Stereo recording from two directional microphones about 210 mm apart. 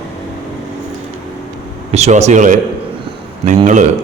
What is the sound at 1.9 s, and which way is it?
Speech, 30° right (ahead or behind).